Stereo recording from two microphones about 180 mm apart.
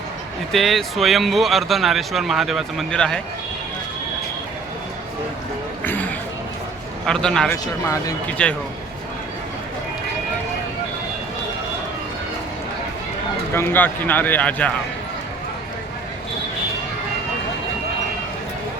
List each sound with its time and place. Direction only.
0.5 s speech: centre (ahead or behind)
5.8 s a sound: 10° left (ahead or behind)
7.0 s speech: 5° left (ahead or behind)
7.5 s speech: 15° left (ahead or behind)
8.4 s speech: 5° left (ahead or behind)
13.5 s speech: 15° left (ahead or behind)